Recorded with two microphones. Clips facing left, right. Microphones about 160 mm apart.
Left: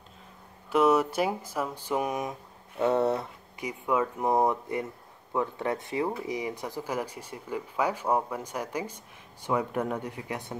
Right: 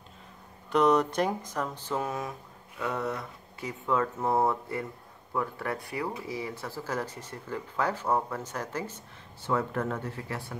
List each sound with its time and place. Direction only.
0.7 s speech: 5° left (ahead or behind)
2.8 s speech: 30° left (ahead or behind)
3.5 s speech: 15° left (ahead or behind)